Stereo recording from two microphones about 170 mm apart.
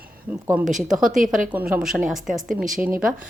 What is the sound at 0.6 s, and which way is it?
Speech, 45° right (ahead or behind).